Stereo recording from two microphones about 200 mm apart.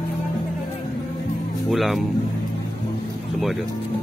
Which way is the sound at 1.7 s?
Centre (ahead or behind).